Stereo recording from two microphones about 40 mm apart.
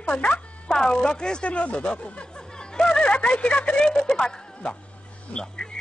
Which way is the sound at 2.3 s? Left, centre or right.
Centre.